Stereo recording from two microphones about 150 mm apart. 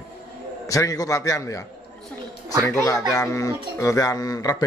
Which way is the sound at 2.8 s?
20° left (ahead or behind).